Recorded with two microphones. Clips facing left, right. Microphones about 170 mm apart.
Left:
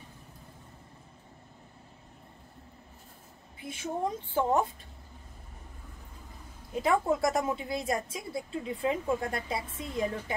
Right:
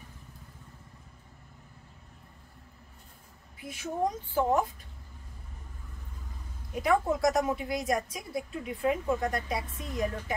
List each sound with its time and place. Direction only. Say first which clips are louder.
3.5 s a woman's voice: right 1 dB; 25° left (ahead or behind)
6.8 s a woman's voice: right 1 dB; 25° left (ahead or behind)